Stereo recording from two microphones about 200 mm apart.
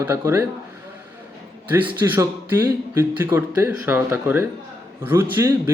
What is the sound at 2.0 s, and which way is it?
Speech, 15° right (ahead or behind).